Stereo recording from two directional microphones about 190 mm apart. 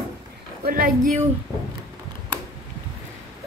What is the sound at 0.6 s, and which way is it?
Speech, 50° right (ahead or behind).